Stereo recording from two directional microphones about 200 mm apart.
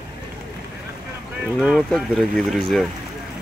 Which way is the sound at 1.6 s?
Centre (ahead or behind).